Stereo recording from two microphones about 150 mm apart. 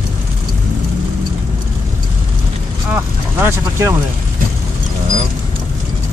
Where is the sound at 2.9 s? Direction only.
15° right (ahead or behind).